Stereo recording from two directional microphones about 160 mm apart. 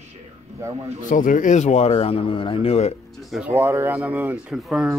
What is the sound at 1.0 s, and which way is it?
Speech, 55° left (ahead or behind).